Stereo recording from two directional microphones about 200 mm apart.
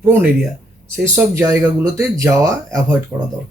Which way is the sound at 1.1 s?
15° right (ahead or behind).